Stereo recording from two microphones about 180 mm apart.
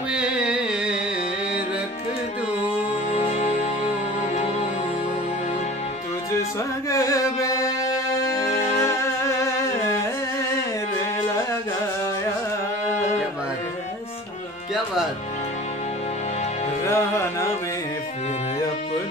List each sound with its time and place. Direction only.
0.1 s music: 5° right (ahead or behind)
3.2 s music: 40° left (ahead or behind)
6.9 s carnatic music: 15° left (ahead or behind)
8.5 s music: 40° left (ahead or behind)
8.7 s music: 15° left (ahead or behind)
16.8 s music: 15° left (ahead or behind)